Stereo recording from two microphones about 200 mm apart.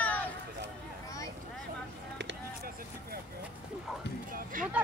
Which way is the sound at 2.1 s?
60° right (ahead or behind).